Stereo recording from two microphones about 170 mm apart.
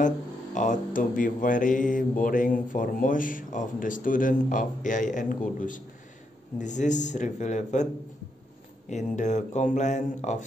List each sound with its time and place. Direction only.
0.6 s speech: 50° left (ahead or behind)